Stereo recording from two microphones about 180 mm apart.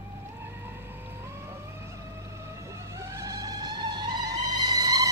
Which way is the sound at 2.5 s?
15° right (ahead or behind).